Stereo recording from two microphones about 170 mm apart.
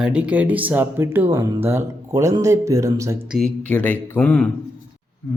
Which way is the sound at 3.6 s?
10° left (ahead or behind).